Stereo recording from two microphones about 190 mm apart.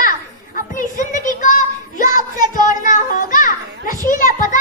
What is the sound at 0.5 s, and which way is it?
Child singing, 40° left (ahead or behind).